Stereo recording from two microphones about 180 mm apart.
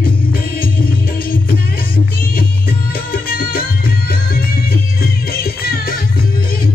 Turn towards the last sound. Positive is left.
turn(degrees=55)  # may be behind; listen again after turning